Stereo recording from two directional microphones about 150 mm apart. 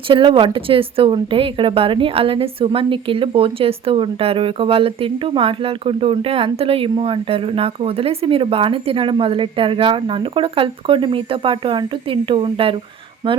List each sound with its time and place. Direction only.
0.1 s speech: 35° right (ahead or behind)